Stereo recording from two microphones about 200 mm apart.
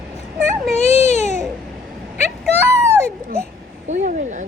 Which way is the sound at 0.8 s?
35° left (ahead or behind).